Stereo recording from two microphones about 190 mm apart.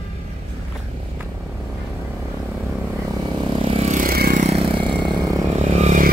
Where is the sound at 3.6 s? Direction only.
30° right (ahead or behind); by 4.4 s 50° right (ahead or behind).